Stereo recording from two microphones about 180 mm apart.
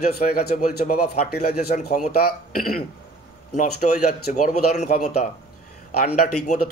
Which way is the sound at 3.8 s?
45° left (ahead or behind).